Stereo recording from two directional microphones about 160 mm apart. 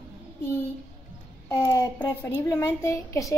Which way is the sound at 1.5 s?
15° left (ahead or behind).